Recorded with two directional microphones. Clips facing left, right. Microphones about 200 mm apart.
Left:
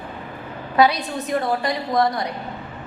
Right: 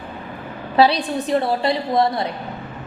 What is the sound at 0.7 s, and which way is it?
A woman's voice, 30° right (ahead or behind).